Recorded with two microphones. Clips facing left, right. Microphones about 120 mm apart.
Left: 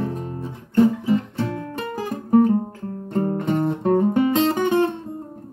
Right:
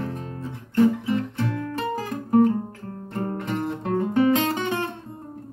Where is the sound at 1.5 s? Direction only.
30° left (ahead or behind).